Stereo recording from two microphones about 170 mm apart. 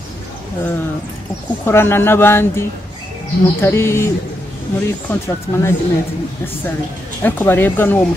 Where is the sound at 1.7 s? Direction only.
15° left (ahead or behind).